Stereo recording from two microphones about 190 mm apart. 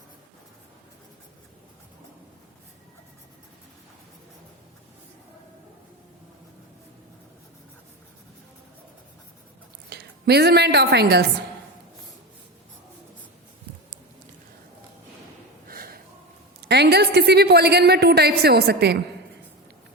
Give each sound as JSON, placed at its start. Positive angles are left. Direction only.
{"t": 9.9, "sound": "a woman's voice", "side_deg": -60}
{"t": 15.6, "sound": "a sound", "side_deg": -50}
{"t": 16.6, "sound": "a man's voice", "side_deg": -60}